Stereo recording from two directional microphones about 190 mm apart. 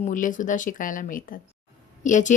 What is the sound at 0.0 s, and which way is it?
A woman's voice, 45° left (ahead or behind).